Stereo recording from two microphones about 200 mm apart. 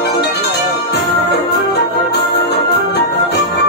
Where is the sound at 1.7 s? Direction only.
55° left (ahead or behind).